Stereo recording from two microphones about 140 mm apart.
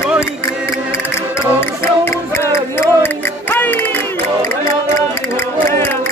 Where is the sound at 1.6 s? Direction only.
15° left (ahead or behind).